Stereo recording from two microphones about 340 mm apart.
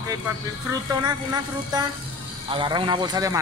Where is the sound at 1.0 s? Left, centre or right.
Centre.